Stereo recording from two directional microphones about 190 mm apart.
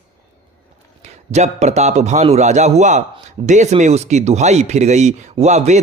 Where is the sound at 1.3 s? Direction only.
35° right (ahead or behind).